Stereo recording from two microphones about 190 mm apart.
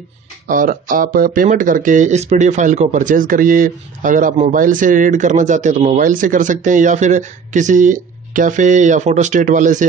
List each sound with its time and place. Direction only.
0.5 s speech: 45° right (ahead or behind)